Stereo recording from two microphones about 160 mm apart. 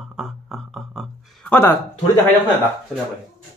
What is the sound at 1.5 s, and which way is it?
Speech, 15° left (ahead or behind).